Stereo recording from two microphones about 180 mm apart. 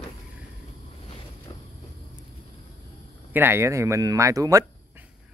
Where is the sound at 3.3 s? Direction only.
10° right (ahead or behind).